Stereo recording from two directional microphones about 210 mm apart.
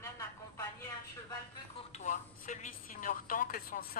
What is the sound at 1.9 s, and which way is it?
A woman's voice, 35° left (ahead or behind).